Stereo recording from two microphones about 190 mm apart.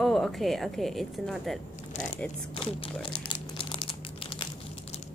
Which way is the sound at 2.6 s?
30° left (ahead or behind).